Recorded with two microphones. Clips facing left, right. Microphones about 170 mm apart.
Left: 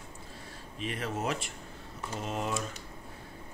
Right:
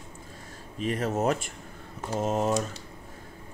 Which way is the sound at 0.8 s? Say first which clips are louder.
Right 7 dB; 40° right (ahead or behind).